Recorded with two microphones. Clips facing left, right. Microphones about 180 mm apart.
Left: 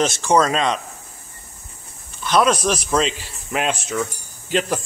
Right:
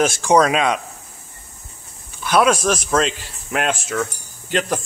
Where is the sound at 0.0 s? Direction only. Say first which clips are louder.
Right 2 dB; 10° right (ahead or behind).